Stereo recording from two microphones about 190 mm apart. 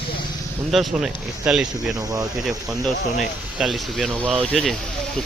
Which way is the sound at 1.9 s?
20° right (ahead or behind).